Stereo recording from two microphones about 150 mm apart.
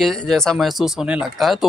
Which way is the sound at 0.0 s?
5° left (ahead or behind).